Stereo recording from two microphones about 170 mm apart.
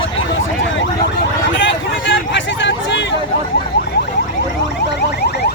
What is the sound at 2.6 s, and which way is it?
Hubbub, 90° left.